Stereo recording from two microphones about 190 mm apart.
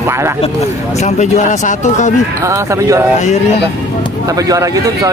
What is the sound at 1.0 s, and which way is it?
Speech, 40° left (ahead or behind).